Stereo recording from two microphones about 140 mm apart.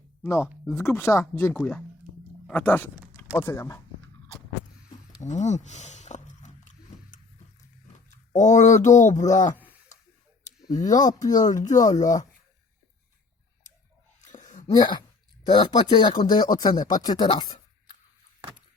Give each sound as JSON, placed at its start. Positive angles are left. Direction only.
{"t": 0.7, "sound": "speech", "side_deg": 20}
{"t": 5.2, "sound": "chewing", "side_deg": 55}
{"t": 8.1, "sound": "speech", "side_deg": 60}
{"t": 10.4, "sound": "a sound", "side_deg": 60}
{"t": 10.8, "sound": "speech", "side_deg": 25}
{"t": 11.5, "sound": "speech", "side_deg": 60}
{"t": 14.2, "sound": "a sound", "side_deg": 65}
{"t": 14.7, "sound": "speech", "side_deg": 30}